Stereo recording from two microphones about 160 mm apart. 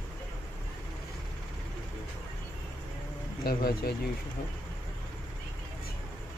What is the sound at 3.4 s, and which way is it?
Speech, 80° left.